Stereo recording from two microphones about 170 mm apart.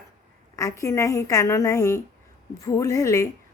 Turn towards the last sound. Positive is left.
turn(degrees=20)  # may be behind; listen again after turning